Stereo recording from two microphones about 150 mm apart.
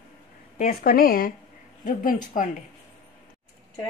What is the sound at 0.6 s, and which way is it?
Speech, 75° left (ahead or behind).